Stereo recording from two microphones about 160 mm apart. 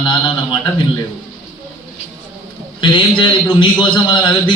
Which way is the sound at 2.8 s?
30° left (ahead or behind).